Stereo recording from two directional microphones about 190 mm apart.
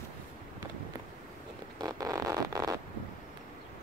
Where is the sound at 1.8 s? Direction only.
20° right (ahead or behind).